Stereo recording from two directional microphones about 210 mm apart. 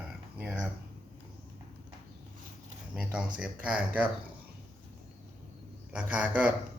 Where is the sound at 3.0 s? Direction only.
5° right (ahead or behind).